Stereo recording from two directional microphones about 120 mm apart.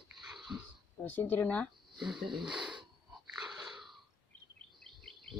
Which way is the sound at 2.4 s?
5° right (ahead or behind).